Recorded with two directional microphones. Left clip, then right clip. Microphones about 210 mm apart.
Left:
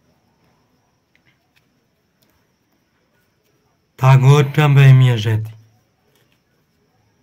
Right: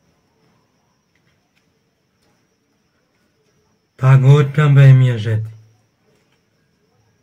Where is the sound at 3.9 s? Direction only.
50° left (ahead or behind).